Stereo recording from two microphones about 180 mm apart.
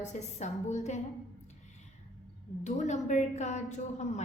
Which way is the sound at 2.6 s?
40° left (ahead or behind).